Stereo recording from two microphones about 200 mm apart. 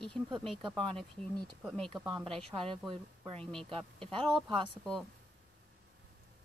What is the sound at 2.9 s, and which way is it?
Speech, 25° right (ahead or behind).